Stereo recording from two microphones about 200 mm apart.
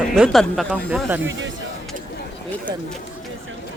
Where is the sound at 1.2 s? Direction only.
70° right (ahead or behind).